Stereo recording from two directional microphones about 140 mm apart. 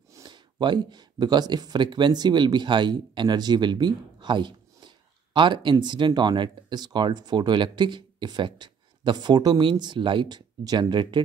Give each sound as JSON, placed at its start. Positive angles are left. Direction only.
{"t": 0.1, "sound": "speech", "side_deg": -30}